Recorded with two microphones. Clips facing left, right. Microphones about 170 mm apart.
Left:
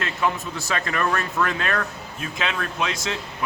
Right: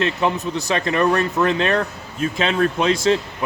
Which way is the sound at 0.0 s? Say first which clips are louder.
Right 5 dB; 20° right (ahead or behind).